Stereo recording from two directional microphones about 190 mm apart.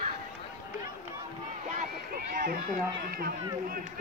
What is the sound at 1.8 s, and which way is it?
Run, 45° right (ahead or behind).